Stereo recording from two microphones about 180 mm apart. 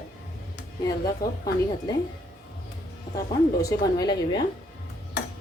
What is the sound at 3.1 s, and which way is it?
Speech, 20° left (ahead or behind).